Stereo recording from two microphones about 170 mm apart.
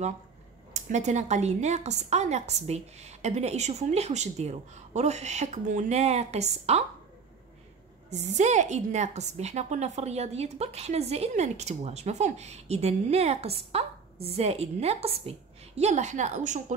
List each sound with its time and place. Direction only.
0.7 s a woman's voice: 45° right (ahead or behind)
8.1 s a woman's voice: 45° right (ahead or behind)